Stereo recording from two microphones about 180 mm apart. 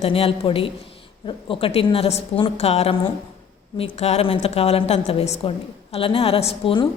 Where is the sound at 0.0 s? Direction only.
30° left (ahead or behind).